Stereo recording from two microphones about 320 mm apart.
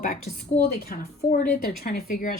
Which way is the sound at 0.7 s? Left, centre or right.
Left.